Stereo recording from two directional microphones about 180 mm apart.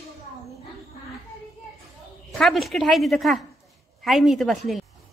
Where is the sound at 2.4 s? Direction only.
Centre (ahead or behind).